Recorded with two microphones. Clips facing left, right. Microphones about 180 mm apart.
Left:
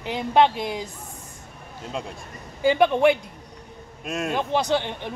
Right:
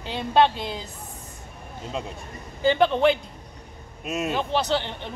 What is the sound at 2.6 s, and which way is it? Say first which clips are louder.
Speech: left 1 dB; 15° left (ahead or behind).